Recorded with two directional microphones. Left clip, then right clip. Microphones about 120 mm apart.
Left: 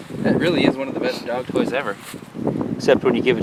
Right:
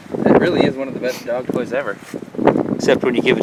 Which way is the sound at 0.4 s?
25° left (ahead or behind).